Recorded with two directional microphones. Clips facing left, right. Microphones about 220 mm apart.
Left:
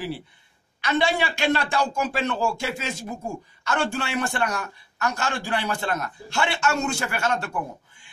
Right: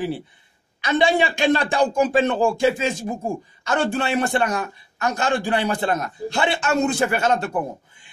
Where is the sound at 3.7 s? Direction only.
20° right (ahead or behind).